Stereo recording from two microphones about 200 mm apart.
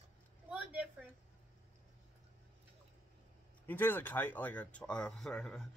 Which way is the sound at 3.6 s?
10° left (ahead or behind).